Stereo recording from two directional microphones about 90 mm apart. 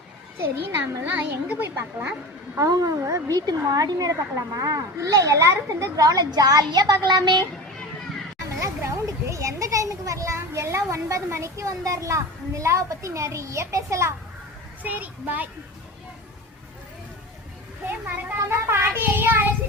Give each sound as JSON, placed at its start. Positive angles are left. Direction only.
{"t": 1.0, "sound": "a child's voice", "side_deg": -20}
{"t": 2.6, "sound": "a woman's voice", "side_deg": -40}
{"t": 3.4, "sound": "a woman's voice", "side_deg": -50}
{"t": 8.6, "sound": "a child's voice", "side_deg": -35}
{"t": 14.8, "sound": "a child's voice", "side_deg": -20}
{"t": 17.8, "sound": "child singing", "side_deg": -25}